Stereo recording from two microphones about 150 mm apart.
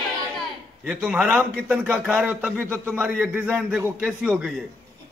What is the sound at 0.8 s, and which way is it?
A man's voice, 10° right (ahead or behind).